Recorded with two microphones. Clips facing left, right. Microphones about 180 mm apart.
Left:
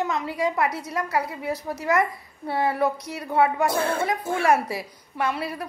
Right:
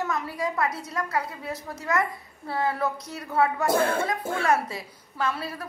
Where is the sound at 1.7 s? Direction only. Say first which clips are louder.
Left 4 dB; 20° left (ahead or behind).